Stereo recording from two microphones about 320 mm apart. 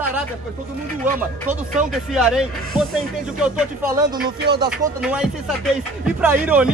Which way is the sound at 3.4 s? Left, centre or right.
Centre.